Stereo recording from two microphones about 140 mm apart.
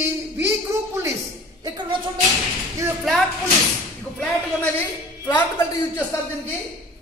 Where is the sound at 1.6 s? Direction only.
30° right (ahead or behind).